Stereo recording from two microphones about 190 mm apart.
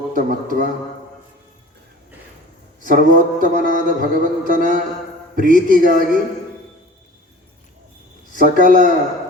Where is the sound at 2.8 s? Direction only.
45° right (ahead or behind).